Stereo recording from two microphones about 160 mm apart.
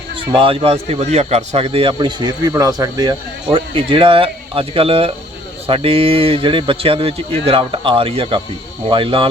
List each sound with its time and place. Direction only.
0.3 s a man's voice: 35° right (ahead or behind)